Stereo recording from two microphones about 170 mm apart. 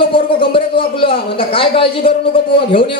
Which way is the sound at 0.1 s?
30° left (ahead or behind).